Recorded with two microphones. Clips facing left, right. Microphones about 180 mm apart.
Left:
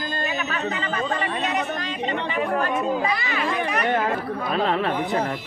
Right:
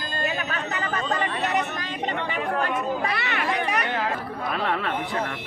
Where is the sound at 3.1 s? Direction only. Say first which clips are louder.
Left 2 dB; 65° right (ahead or behind).